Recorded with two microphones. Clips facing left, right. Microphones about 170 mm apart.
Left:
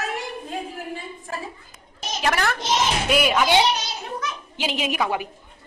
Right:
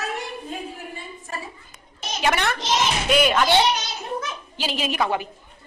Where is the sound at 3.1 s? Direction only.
5° left (ahead or behind).